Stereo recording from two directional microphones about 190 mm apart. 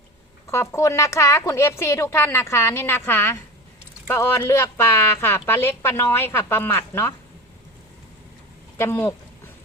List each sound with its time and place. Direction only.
0.4 s a woman's voice: 15° left (ahead or behind)
8.8 s a woman's voice: 15° left (ahead or behind)